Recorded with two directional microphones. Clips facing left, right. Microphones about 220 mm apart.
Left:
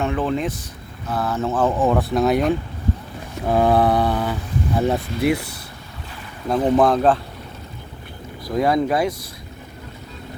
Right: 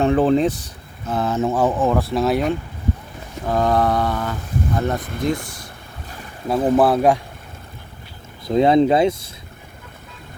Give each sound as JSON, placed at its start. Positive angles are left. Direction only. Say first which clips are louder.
{"t": 0.0, "sound": "speech", "louder": "right 6 dB", "side_deg": -35}
{"t": 1.0, "sound": "speech", "louder": "right 3 dB", "side_deg": -25}
{"t": 1.8, "sound": "speech", "louder": "left 1 dB", "side_deg": 0}
{"t": 3.4, "sound": "speech", "louder": "left 2 dB", "side_deg": 10}
{"t": 6.5, "sound": "speech", "louder": "right 1 dB", "side_deg": -5}
{"t": 8.4, "sound": "speech", "louder": "right 5 dB", "side_deg": -25}